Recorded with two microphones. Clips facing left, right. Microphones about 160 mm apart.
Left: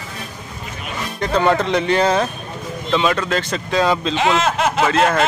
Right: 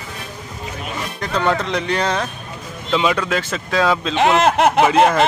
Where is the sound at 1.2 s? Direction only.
Centre (ahead or behind).